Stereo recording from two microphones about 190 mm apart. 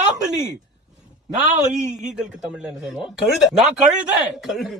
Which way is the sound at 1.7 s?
40° right (ahead or behind).